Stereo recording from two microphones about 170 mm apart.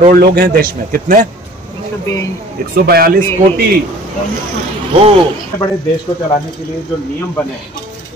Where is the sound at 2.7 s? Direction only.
60° right (ahead or behind).